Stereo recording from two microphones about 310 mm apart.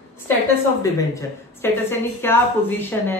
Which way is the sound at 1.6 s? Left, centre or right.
Centre.